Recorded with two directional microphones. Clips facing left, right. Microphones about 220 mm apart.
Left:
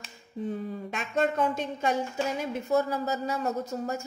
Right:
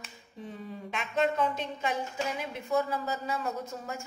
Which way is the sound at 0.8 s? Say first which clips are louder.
Left 1 dB; 45° left (ahead or behind).